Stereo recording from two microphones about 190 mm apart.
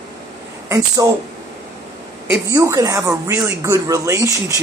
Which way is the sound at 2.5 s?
15° right (ahead or behind).